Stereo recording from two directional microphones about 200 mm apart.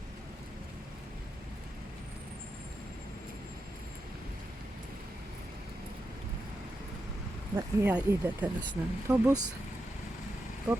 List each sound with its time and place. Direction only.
7.5 s speech: 10° right (ahead or behind)